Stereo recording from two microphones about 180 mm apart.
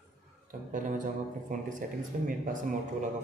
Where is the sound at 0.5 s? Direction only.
50° right (ahead or behind).